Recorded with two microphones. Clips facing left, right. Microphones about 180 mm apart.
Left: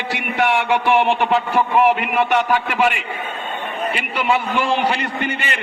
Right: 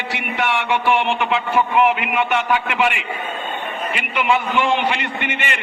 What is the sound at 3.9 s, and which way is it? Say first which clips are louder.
A man's voice: right 1 dB; 35° left (ahead or behind).